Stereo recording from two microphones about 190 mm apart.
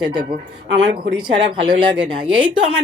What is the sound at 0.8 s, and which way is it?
Speech, 70° right (ahead or behind).